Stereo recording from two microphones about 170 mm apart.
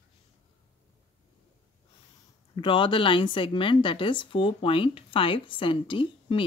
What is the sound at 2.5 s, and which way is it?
A woman's voice, 30° left (ahead or behind).